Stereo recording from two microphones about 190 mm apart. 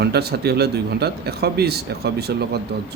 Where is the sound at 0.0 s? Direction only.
60° right (ahead or behind).